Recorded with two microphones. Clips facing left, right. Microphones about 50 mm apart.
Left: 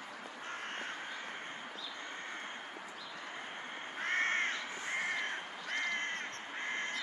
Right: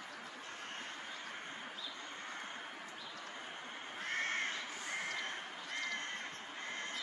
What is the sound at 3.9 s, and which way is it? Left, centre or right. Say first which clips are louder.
Crow: left 5 dB; left.